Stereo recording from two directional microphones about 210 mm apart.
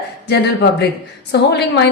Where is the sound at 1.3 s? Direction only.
55° left (ahead or behind).